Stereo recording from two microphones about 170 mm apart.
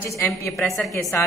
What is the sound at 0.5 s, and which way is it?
Speech, centre (ahead or behind).